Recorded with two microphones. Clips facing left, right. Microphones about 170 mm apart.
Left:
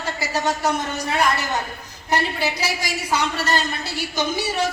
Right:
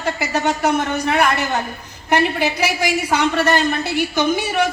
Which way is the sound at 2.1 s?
60° right (ahead or behind).